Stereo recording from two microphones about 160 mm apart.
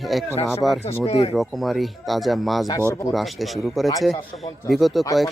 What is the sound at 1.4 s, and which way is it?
Speech, centre (ahead or behind).